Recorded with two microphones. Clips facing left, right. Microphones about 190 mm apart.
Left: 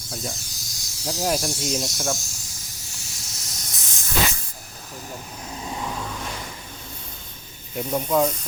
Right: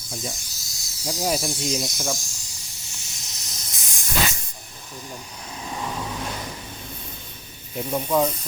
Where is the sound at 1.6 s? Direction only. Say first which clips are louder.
Even; centre (ahead or behind).